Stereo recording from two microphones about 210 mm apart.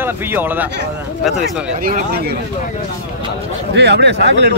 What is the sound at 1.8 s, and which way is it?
Speech, 45° right (ahead or behind).